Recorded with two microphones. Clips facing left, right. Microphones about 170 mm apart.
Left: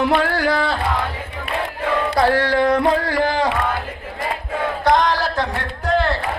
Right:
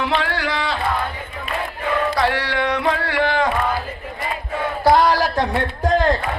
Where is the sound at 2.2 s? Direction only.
45° left (ahead or behind).